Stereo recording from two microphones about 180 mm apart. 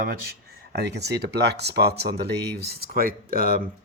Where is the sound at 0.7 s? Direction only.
65° right (ahead or behind).